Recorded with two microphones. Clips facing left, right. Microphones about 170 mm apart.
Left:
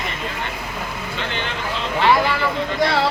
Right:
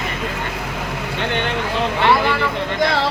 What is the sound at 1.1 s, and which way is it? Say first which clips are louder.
Vehicle: right 6 dB; 60° right (ahead or behind).